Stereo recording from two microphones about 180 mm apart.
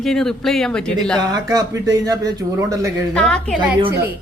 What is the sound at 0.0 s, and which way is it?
Speech, centre (ahead or behind).